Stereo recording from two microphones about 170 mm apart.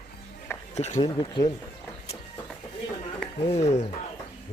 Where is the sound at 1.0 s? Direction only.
25° left (ahead or behind).